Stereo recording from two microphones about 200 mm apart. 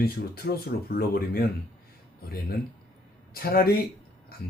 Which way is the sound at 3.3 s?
50° left (ahead or behind).